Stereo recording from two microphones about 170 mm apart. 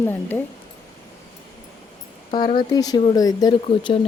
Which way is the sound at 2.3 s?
25° left (ahead or behind).